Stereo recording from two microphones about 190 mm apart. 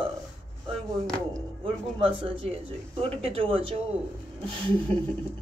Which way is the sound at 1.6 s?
30° right (ahead or behind).